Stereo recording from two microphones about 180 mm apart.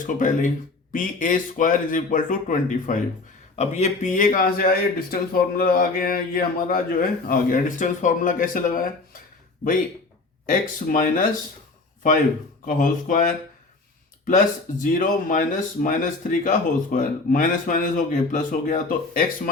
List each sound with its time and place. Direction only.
0.1 s speech: 45° left (ahead or behind)
10.4 s speech: 45° left (ahead or behind)
12.6 s speech: 50° left (ahead or behind)